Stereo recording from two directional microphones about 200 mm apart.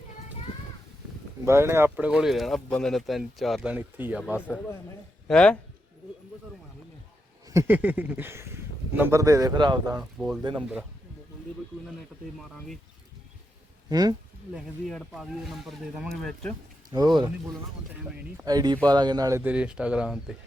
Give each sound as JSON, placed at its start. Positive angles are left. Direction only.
{"t": 1.5, "sound": "speech", "side_deg": -15}
{"t": 5.3, "sound": "speech", "side_deg": 5}
{"t": 7.4, "sound": "speech", "side_deg": -15}
{"t": 10.0, "sound": "speech", "side_deg": 0}
{"t": 13.9, "sound": "speech", "side_deg": -20}
{"t": 14.5, "sound": "speech", "side_deg": 0}
{"t": 17.2, "sound": "speech", "side_deg": -20}